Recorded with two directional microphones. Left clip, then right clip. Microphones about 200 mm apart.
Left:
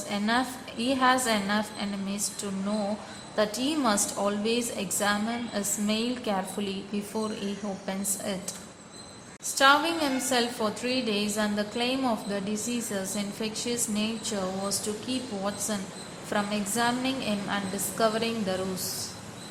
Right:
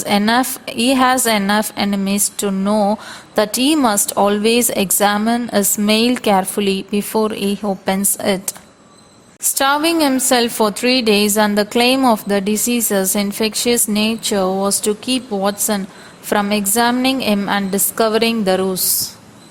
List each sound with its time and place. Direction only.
0.0 s a woman's voice: 50° right (ahead or behind)
9.6 s a woman's voice: 50° right (ahead or behind)